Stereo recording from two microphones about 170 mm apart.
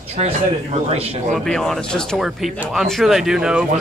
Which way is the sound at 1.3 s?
5° left (ahead or behind).